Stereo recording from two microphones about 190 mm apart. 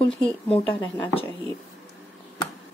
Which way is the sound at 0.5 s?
25° left (ahead or behind).